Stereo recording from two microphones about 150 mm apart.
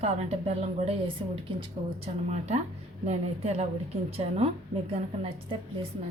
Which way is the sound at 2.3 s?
50° right (ahead or behind).